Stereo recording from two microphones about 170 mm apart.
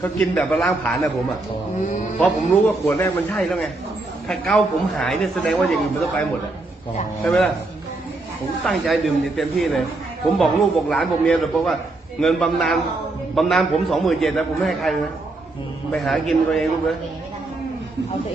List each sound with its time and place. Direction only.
0.0 s a man's voice: 10° left (ahead or behind)
2.8 s speech: 10° left (ahead or behind)
7.3 s speech: centre (ahead or behind)
8.6 s speech: centre (ahead or behind)